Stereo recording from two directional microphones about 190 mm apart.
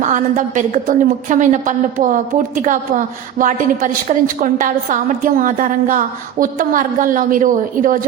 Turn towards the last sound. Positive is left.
turn(degrees=-45)  # may be behind; listen again after turning